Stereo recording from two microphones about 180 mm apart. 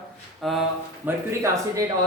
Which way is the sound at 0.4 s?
Centre (ahead or behind).